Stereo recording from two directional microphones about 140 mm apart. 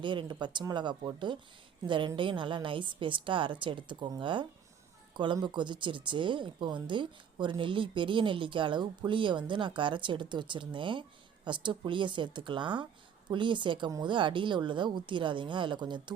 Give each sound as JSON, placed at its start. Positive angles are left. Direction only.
{"t": 0.0, "sound": "speech", "side_deg": -35}